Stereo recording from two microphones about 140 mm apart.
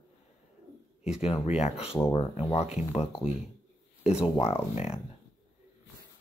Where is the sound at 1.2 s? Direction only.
45° left (ahead or behind).